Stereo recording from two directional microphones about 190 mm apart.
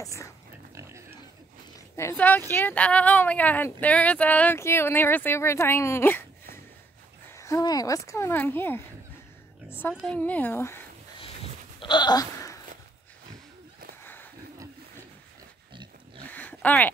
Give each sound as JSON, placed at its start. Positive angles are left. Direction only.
{"t": 0.0, "sound": "speech", "side_deg": 15}
{"t": 0.7, "sound": "pig", "side_deg": -15}
{"t": 2.0, "sound": "speech", "side_deg": 10}
{"t": 7.2, "sound": "speech", "side_deg": 15}
{"t": 11.8, "sound": "goat", "side_deg": 25}
{"t": 14.0, "sound": "a sound", "side_deg": 10}
{"t": 16.3, "sound": "a sound", "side_deg": 10}